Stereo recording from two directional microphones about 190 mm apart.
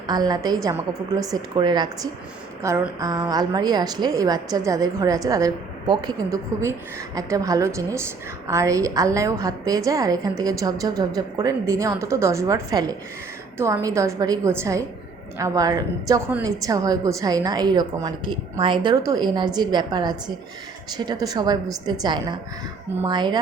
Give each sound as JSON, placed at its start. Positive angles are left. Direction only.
{"t": 0.1, "sound": "a woman's voice", "side_deg": -20}